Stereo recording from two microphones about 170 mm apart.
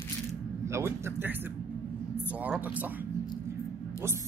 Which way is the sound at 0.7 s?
15° right (ahead or behind).